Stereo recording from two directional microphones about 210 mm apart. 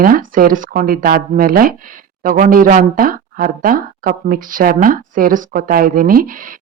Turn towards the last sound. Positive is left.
turn(degrees=-40)  # may be behind; listen again after turning